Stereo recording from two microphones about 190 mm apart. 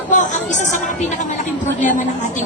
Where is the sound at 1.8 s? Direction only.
40° left (ahead or behind).